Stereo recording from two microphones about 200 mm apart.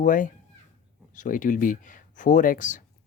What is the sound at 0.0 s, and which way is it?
Speech, 40° left (ahead or behind).